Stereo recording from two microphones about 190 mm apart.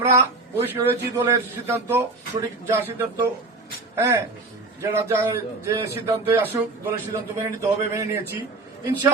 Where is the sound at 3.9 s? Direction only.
15° right (ahead or behind).